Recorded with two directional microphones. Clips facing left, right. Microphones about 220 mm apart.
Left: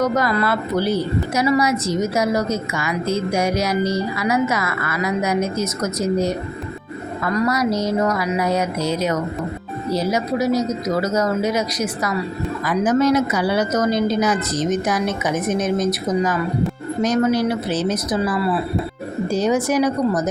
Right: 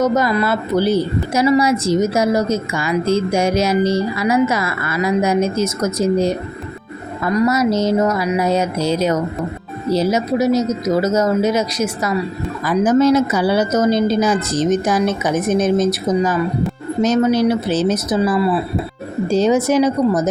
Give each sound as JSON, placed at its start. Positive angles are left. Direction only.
{"t": 0.0, "sound": "a woman's voice", "side_deg": -20}